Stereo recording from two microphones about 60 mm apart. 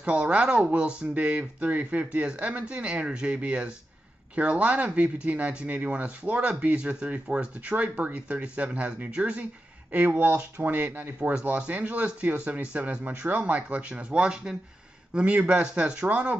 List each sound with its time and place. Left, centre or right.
0.0 s speech: right